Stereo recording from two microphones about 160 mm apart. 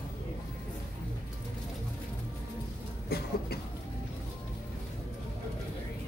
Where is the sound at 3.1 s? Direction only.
75° left (ahead or behind).